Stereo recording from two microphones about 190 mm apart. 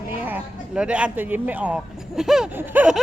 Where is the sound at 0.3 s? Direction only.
5° right (ahead or behind).